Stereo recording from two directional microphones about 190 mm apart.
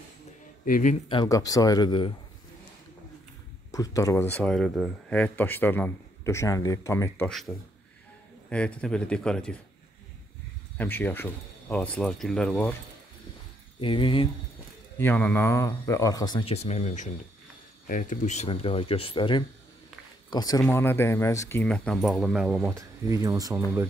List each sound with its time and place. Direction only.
0.7 s speech: 45° left (ahead or behind)
1.0 s speech: 25° left (ahead or behind)
3.7 s speech: 15° left (ahead or behind)
7.2 s a man's voice: centre (ahead or behind)
10.8 s a man's voice: 10° left (ahead or behind)
13.7 s speech: 25° left (ahead or behind)
15.0 s speech: 10° left (ahead or behind)
22.8 s speech: 15° right (ahead or behind)